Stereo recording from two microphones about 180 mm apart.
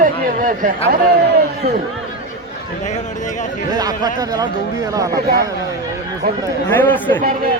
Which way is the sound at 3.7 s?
20° right (ahead or behind).